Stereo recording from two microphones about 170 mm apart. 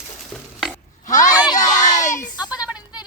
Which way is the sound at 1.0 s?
45° left (ahead or behind).